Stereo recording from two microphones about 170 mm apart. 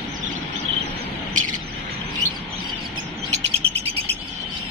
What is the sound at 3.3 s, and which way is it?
Bird, 35° right (ahead or behind).